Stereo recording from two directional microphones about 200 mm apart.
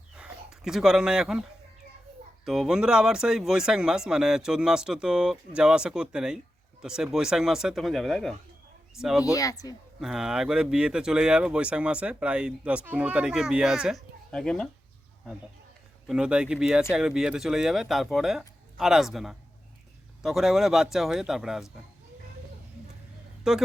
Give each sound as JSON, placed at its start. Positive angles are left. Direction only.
{"t": 0.2, "sound": "speech", "side_deg": -5}
{"t": 9.3, "sound": "speech", "side_deg": 15}
{"t": 10.0, "sound": "speech", "side_deg": -5}
{"t": 16.0, "sound": "speech", "side_deg": -5}
{"t": 23.5, "sound": "speech", "side_deg": -5}